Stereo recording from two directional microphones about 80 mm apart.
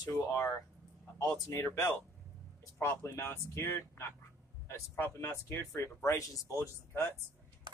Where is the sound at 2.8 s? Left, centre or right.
Left.